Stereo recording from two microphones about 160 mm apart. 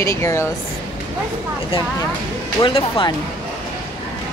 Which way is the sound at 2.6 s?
30° left (ahead or behind).